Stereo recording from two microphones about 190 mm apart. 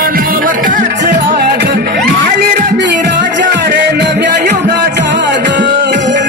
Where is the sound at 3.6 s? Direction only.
55° right (ahead or behind).